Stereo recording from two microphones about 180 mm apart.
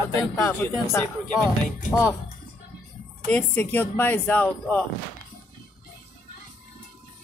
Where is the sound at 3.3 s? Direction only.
10° left (ahead or behind).